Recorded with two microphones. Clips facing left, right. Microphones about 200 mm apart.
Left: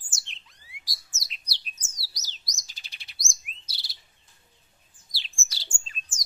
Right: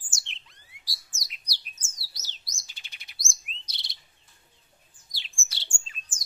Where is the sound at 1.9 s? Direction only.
40° left (ahead or behind).